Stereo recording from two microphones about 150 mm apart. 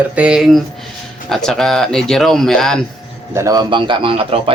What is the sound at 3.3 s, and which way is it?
A man's voice, 20° right (ahead or behind).